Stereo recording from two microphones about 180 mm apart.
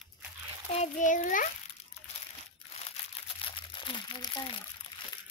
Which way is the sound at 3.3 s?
30° left (ahead or behind).